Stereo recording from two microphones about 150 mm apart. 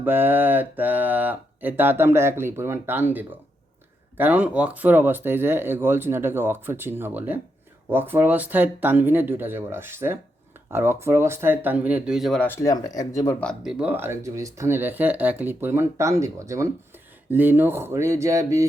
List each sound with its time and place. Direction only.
0.0 s speech: 15° right (ahead or behind)
12.5 s speech: 20° left (ahead or behind)
13.7 s speech: 5° right (ahead or behind)